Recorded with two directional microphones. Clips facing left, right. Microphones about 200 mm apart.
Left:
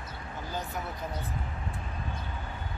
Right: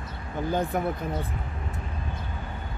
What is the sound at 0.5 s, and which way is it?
Speech, 55° right (ahead or behind).